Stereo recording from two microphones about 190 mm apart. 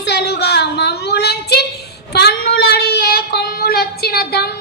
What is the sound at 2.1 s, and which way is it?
Child singing, 60° left (ahead or behind).